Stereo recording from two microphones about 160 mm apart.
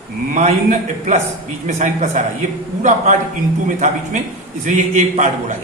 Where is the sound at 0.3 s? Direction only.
50° right (ahead or behind).